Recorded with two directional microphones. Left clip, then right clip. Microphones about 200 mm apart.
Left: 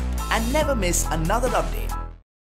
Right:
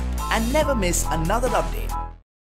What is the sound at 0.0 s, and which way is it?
Speech, centre (ahead or behind).